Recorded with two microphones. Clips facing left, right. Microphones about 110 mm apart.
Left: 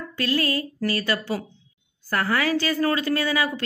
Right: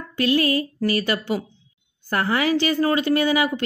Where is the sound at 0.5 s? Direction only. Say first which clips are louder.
Right 4 dB; 20° right (ahead or behind).